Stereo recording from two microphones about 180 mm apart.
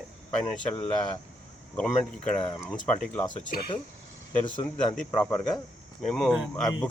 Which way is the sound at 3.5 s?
60° left (ahead or behind).